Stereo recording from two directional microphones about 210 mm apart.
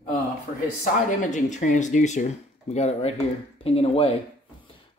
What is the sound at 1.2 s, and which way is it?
Speech, 35° left (ahead or behind).